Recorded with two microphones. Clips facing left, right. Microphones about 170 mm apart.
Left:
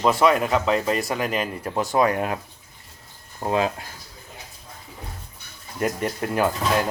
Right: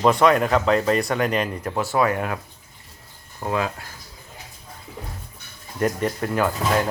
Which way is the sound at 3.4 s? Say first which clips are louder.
Left 2 dB; 25° left (ahead or behind).